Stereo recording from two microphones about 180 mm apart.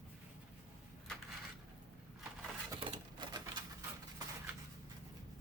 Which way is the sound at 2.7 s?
25° right (ahead or behind).